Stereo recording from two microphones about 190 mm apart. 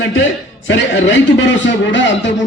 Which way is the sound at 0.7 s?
75° left (ahead or behind).